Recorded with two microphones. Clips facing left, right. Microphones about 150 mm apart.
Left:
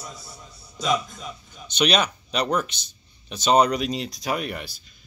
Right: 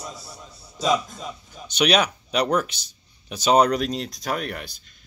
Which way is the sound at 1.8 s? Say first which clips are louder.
Right 2 dB; 5° right (ahead or behind).